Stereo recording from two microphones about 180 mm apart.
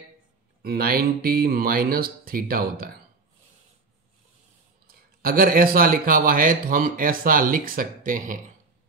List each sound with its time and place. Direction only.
0.6 s speech: 55° right (ahead or behind)
4.8 s a man's voice: 55° right (ahead or behind)